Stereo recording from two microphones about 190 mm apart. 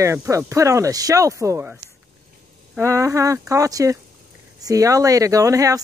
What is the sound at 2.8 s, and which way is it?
Speech, 15° right (ahead or behind).